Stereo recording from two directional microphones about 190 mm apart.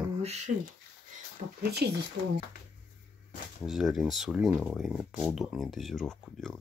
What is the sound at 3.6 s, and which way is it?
Speech, centre (ahead or behind).